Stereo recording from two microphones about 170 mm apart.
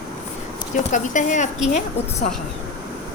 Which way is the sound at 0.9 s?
45° left (ahead or behind).